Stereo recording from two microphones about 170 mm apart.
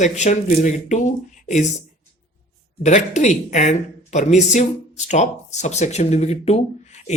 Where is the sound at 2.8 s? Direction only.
45° left (ahead or behind).